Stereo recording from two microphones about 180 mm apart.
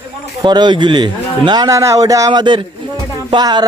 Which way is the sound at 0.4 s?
25° right (ahead or behind).